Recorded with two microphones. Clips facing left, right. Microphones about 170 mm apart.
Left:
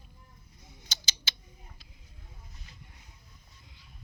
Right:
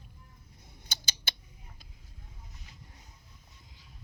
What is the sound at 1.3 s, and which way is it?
Tick-tock, 55° right (ahead or behind).